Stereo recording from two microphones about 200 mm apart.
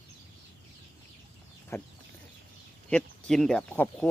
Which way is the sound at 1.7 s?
15° left (ahead or behind).